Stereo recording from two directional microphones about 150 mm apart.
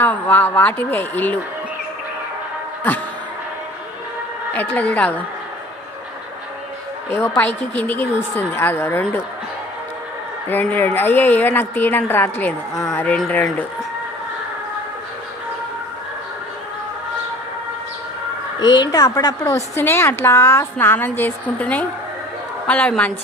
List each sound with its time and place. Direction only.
0.0 s a woman's voice: 10° left (ahead or behind)
4.5 s a woman's voice: 10° left (ahead or behind)
7.1 s a woman's voice: 15° left (ahead or behind)
10.5 s a woman's voice: 15° left (ahead or behind)
18.6 s a woman's voice: 30° left (ahead or behind); by 23.1 s 10° left (ahead or behind)